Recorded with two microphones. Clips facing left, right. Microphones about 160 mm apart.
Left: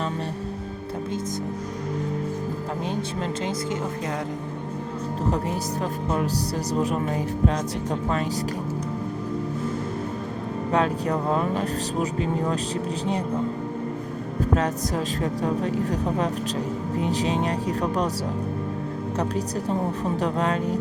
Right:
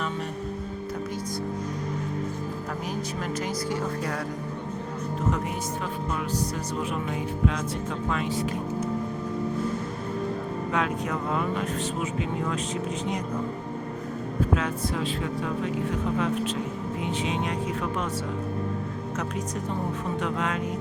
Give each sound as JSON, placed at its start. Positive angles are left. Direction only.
{"t": 6.1, "sound": "speech", "side_deg": 35}
{"t": 10.7, "sound": "speech", "side_deg": 35}
{"t": 14.5, "sound": "speech", "side_deg": 40}
{"t": 20.2, "sound": "speech", "side_deg": 35}